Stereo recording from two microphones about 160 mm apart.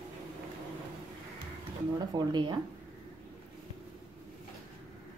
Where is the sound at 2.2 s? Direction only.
25° right (ahead or behind).